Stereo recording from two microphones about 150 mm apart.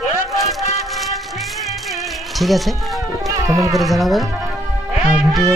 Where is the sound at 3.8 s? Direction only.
Centre (ahead or behind).